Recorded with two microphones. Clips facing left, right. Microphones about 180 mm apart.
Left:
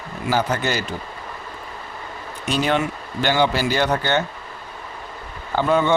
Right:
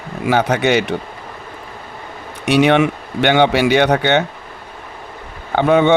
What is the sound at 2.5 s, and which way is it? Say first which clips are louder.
A man's voice: right 8 dB; 70° right (ahead or behind).